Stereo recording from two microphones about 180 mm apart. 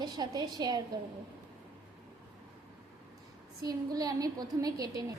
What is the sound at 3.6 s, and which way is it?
A woman's voice, 20° right (ahead or behind).